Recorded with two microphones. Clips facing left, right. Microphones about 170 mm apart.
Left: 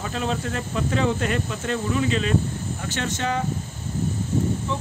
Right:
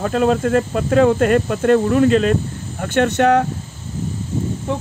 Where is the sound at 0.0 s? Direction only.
50° right (ahead or behind).